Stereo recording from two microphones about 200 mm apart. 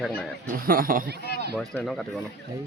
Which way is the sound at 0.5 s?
45° right (ahead or behind).